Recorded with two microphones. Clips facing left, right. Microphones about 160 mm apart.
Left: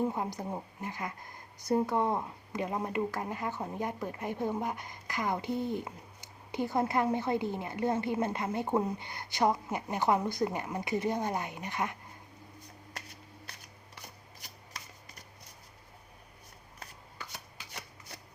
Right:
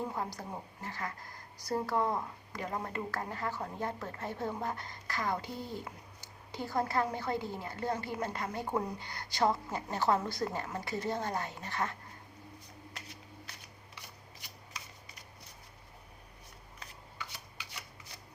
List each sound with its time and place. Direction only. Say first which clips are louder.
0.0 s a woman's voice: left 5 dB; 20° left (ahead or behind)